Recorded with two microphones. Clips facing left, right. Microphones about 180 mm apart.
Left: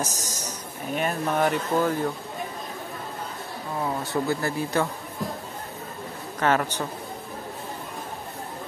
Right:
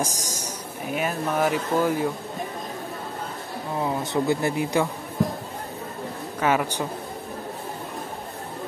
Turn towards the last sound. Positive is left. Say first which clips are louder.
# right 1 dB
turn(degrees=-10)  # may be behind; listen again after turning